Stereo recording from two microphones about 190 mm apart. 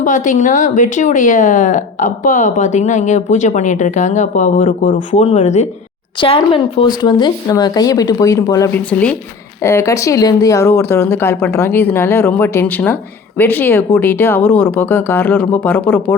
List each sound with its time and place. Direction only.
0.0 s speech: 45° left (ahead or behind); by 15.8 s 10° left (ahead or behind)